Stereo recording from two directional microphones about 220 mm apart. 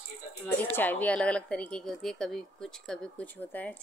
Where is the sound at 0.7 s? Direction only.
10° left (ahead or behind).